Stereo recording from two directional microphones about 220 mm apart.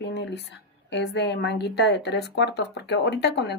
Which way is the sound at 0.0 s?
50° left (ahead or behind).